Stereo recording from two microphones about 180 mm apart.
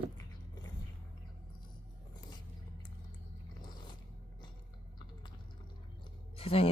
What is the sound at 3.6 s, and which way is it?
Biting, 25° left (ahead or behind).